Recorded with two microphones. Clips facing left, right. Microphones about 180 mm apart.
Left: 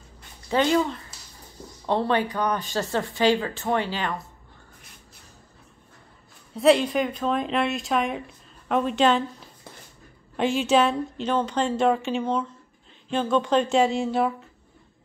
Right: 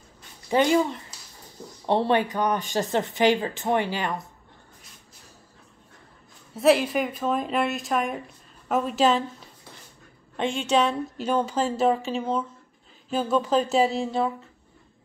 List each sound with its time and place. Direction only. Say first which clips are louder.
0.5 s speech: right 1 dB; 15° right (ahead or behind)
6.5 s a woman's voice: left 1 dB; 5° right (ahead or behind)
10.3 s a woman's voice: left 3 dB; 5° left (ahead or behind)